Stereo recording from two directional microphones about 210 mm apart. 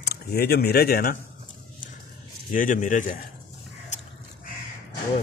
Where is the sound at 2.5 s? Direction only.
40° left (ahead or behind).